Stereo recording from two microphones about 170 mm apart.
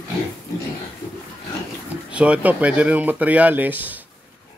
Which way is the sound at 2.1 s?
5° right (ahead or behind).